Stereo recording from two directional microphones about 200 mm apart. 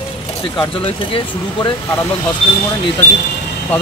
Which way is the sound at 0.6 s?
25° left (ahead or behind).